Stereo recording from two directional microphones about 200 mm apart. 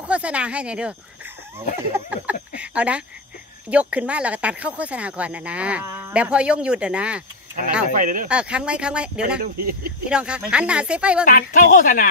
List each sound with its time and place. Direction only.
0.0 s speech: 5° right (ahead or behind)
2.0 s speech: 10° right (ahead or behind)
7.9 s speech: 40° right (ahead or behind)
8.3 s speech: 5° right (ahead or behind)
9.4 s speech: 50° right (ahead or behind)
10.0 s speech: 5° right (ahead or behind)
11.2 s a woman's voice: 40° left (ahead or behind)